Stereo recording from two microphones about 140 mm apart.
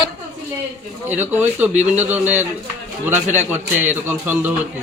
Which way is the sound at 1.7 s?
60° right (ahead or behind).